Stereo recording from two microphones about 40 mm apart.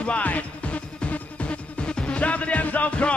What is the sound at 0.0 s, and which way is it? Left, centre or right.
Music, left.